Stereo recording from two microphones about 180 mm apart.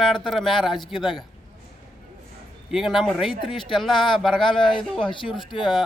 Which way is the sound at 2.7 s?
Centre (ahead or behind).